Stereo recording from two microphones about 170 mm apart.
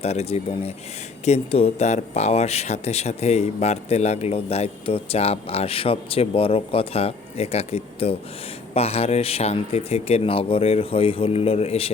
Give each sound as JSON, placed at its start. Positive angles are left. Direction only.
{"t": 0.0, "sound": "speech", "side_deg": 35}